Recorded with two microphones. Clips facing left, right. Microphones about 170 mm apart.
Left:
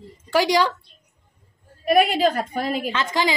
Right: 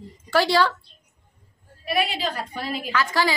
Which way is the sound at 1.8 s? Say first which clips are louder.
Left 8 dB; 50° left (ahead or behind).